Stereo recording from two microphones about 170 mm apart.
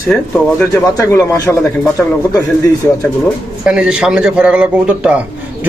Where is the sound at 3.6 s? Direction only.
5° right (ahead or behind).